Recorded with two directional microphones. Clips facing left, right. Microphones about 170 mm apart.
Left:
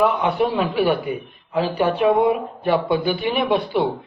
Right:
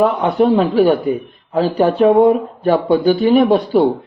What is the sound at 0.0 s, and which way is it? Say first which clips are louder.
Speech: right 5 dB; 40° right (ahead or behind).